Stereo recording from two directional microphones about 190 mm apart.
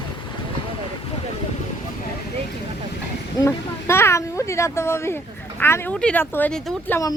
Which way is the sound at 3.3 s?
15° left (ahead or behind).